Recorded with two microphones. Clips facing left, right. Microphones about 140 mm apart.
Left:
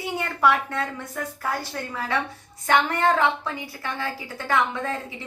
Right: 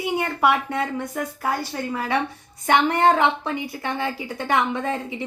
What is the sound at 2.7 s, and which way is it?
A woman's voice, 20° right (ahead or behind).